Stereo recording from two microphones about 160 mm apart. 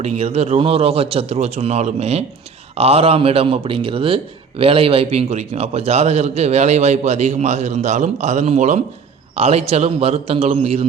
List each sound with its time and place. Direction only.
0.0 s a man's voice: 40° right (ahead or behind)